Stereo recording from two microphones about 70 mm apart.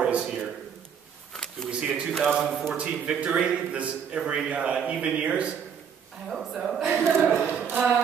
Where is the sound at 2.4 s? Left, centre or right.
Centre.